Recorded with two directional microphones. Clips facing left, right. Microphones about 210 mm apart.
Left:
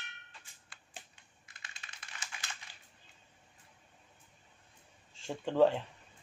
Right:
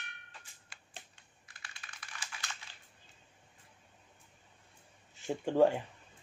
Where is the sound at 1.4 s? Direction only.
20° left (ahead or behind).